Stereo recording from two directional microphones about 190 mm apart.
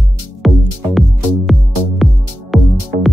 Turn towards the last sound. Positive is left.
turn(degrees=0)  # may be behind; listen again after turning